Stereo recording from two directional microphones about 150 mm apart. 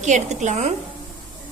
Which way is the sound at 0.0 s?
50° right (ahead or behind).